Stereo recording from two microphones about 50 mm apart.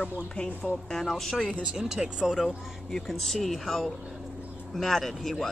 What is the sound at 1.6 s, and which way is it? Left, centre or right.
Speech, centre.